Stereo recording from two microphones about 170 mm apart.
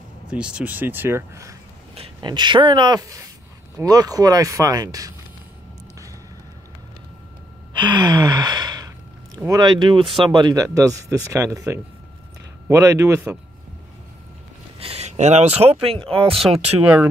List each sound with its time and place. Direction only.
0.3 s speech: 5° right (ahead or behind)
7.7 s gasp: 25° right (ahead or behind)
9.5 s speech: 25° right (ahead or behind)
14.8 s speech: 35° right (ahead or behind)
16.8 s speech: 10° right (ahead or behind)